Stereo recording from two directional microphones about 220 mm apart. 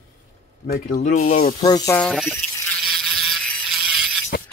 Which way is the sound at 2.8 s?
Centre (ahead or behind).